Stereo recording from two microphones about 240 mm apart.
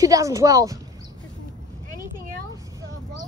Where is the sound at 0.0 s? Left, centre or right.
Centre.